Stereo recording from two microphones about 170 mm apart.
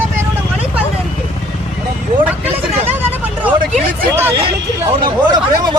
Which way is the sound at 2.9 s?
10° right (ahead or behind).